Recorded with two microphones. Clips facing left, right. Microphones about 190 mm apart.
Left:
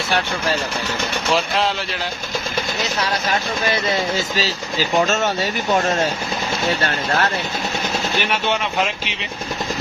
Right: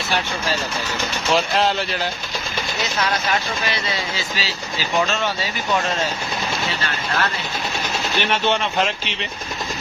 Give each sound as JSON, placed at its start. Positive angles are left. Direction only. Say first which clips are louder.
{"t": 1.3, "sound": "speech", "louder": "right 1 dB", "side_deg": 0}
{"t": 3.7, "sound": "speech", "louder": "left 6 dB", "side_deg": 45}
{"t": 8.2, "sound": "speech", "louder": "right 4 dB", "side_deg": 10}